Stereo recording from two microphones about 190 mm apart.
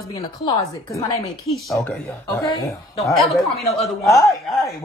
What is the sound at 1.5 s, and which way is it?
Speech, centre (ahead or behind).